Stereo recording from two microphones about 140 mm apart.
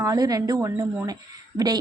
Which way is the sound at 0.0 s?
25° right (ahead or behind).